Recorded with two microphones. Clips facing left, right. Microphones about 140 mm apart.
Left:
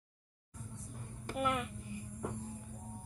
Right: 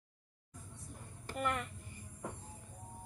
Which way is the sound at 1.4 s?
5° left (ahead or behind).